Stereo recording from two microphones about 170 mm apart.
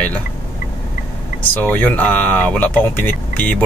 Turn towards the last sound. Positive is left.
turn(degrees=10)  # may be behind; listen again after turning